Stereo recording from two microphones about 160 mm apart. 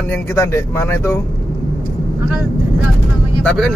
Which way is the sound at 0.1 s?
15° left (ahead or behind).